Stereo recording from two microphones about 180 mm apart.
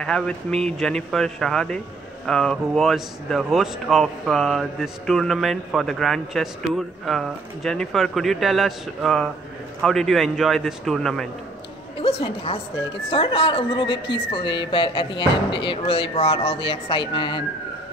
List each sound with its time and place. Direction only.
0.0 s speech: 5° left (ahead or behind)
12.0 s a woman's voice: 30° left (ahead or behind)